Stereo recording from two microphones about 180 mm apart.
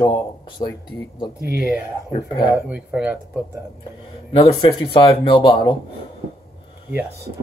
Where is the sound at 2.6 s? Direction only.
5° right (ahead or behind).